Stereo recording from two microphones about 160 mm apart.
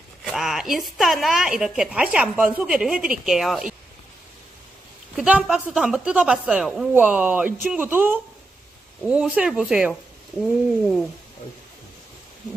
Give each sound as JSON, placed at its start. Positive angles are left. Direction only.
{"t": 0.2, "sound": "a woman's voice", "side_deg": 0}
{"t": 5.1, "sound": "a woman's voice", "side_deg": -5}